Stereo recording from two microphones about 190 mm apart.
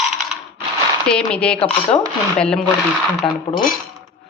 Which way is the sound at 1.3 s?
5° left (ahead or behind).